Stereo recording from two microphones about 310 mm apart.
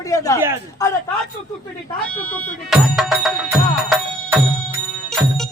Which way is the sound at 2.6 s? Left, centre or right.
Centre.